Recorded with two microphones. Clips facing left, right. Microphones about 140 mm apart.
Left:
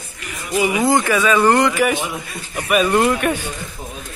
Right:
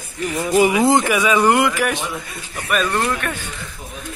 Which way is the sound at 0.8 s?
20° right (ahead or behind).